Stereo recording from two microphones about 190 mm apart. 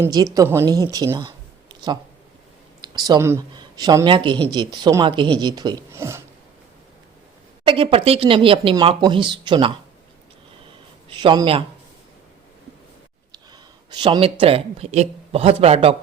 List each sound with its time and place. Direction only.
0.0 s a woman's voice: 20° right (ahead or behind)
2.8 s a woman's voice: 20° right (ahead or behind)
7.6 s speech: 25° right (ahead or behind)
11.1 s a man's voice: 25° right (ahead or behind)
13.3 s speech: 20° right (ahead or behind)